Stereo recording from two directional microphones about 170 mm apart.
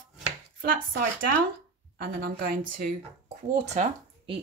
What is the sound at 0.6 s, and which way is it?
Speech, 55° right (ahead or behind).